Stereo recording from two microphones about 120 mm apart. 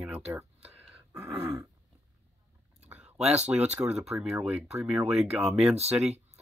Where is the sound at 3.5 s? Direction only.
10° right (ahead or behind).